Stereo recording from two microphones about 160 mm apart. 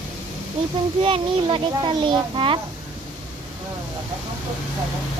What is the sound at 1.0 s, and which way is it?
A child's voice, 35° right (ahead or behind).